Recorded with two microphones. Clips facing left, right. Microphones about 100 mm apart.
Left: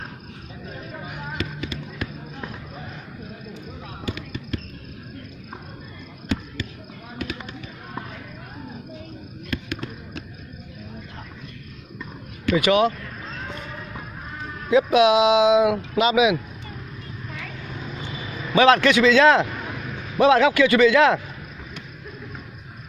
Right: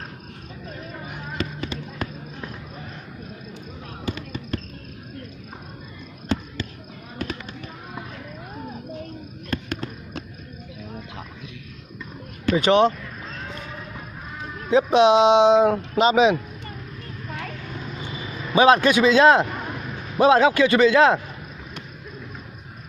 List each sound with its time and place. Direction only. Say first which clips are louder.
1.4 s a sound: right 3 dB; 35° right (ahead or behind)
4.0 s fireworks: right 1 dB; 30° right (ahead or behind)
7.2 s fireworks: right 1 dB; 35° right (ahead or behind)
9.5 s fireworks: right 1 dB; 40° right (ahead or behind)
12.4 s speech: right 1 dB; 35° right (ahead or behind)
14.7 s speech: right 1 dB; 30° right (ahead or behind)
18.1 s vehicle: even; 5° right (ahead or behind)
18.5 s a man's voice: even; 20° right (ahead or behind)
19.7 s a sound: even; 5° right (ahead or behind)
20.2 s a man's voice: even; 25° right (ahead or behind)